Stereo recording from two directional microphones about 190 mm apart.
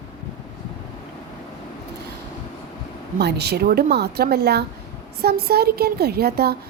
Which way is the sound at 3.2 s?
60° right (ahead or behind).